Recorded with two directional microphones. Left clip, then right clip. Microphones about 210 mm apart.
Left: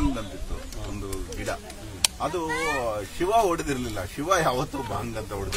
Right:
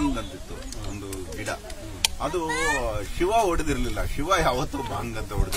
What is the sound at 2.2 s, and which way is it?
Speech, 10° left (ahead or behind).